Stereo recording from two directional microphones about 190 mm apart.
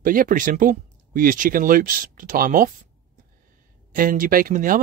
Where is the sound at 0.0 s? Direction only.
45° right (ahead or behind).